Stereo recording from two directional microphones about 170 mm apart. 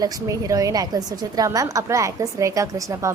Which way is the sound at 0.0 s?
20° right (ahead or behind).